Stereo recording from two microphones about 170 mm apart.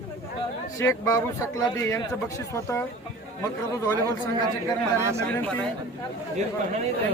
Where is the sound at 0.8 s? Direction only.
20° left (ahead or behind).